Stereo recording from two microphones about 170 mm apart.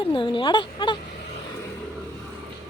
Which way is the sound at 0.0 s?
30° left (ahead or behind).